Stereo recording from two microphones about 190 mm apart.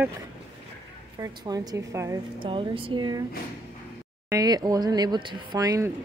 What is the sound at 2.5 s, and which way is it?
Speech, 25° right (ahead or behind).